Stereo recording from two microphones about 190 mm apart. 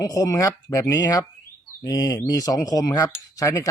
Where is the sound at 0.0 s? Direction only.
20° left (ahead or behind).